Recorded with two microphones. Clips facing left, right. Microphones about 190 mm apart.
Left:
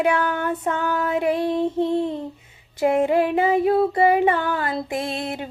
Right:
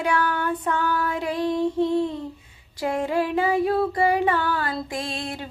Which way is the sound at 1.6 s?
55° left (ahead or behind).